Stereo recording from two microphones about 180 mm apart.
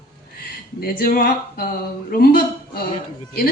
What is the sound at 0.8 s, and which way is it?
A woman's voice, 55° left (ahead or behind).